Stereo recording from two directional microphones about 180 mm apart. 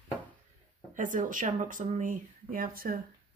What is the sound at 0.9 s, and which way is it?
A woman's voice, 45° right (ahead or behind).